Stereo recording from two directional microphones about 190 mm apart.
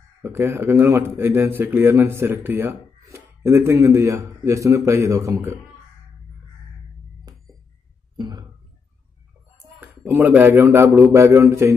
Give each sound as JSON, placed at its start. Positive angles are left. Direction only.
{"t": 0.2, "sound": "speech", "side_deg": -15}
{"t": 8.2, "sound": "a sound", "side_deg": -20}
{"t": 9.8, "sound": "speech", "side_deg": -10}